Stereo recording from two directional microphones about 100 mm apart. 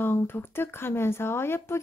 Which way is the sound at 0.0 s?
20° left (ahead or behind).